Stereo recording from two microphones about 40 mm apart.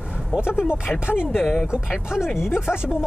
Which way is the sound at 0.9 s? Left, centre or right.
Left.